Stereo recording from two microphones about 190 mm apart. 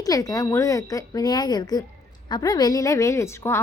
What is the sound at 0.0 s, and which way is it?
A woman's voice, 20° left (ahead or behind).